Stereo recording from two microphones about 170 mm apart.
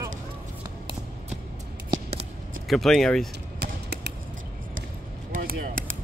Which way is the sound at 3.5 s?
75° right (ahead or behind).